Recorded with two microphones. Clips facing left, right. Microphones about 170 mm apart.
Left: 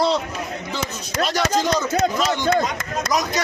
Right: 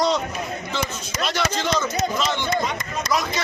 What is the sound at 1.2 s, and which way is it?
Speech, 40° left (ahead or behind).